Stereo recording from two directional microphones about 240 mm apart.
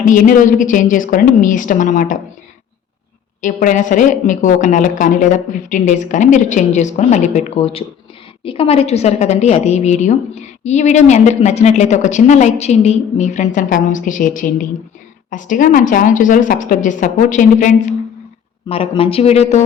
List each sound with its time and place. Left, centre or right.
0.0 s a woman's voice: left
3.4 s a woman's voice: left